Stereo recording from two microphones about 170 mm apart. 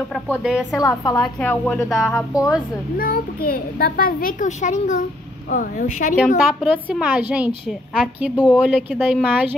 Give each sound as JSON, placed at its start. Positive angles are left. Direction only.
{"t": 0.1, "sound": "a woman's voice", "side_deg": -5}
{"t": 0.7, "sound": "a woman's voice", "side_deg": 20}
{"t": 1.2, "sound": "a woman's voice", "side_deg": 5}
{"t": 3.0, "sound": "a child's voice", "side_deg": 60}
{"t": 6.1, "sound": "a woman's voice", "side_deg": -5}